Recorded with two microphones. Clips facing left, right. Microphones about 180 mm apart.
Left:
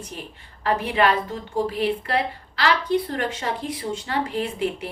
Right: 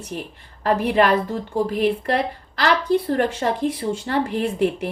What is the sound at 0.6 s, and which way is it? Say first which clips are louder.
A woman's voice: right 3 dB; 45° right (ahead or behind).